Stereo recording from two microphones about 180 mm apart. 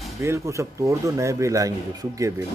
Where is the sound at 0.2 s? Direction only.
15° right (ahead or behind).